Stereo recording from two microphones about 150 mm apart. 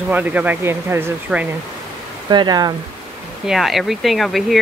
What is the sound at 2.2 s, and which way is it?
Speech, 30° right (ahead or behind).